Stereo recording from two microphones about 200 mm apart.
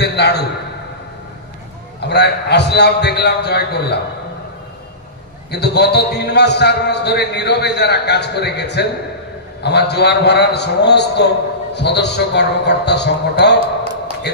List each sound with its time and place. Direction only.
0.0 s a sound: 55° left (ahead or behind)
2.0 s a man's voice: 55° left (ahead or behind)
5.5 s a man's voice: 55° left (ahead or behind)